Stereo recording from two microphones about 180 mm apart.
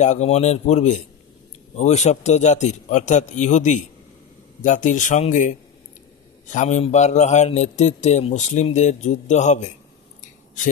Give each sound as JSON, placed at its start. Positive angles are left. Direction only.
{"t": 0.0, "sound": "a man's voice", "side_deg": 40}